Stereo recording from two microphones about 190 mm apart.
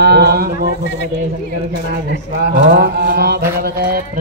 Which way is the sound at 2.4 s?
55° right (ahead or behind).